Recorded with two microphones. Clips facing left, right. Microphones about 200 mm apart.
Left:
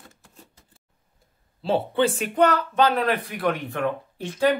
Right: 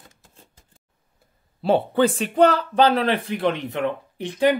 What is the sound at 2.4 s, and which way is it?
Speech, 30° right (ahead or behind).